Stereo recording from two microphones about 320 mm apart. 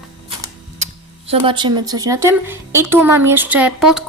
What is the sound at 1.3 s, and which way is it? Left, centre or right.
A woman's voice, centre.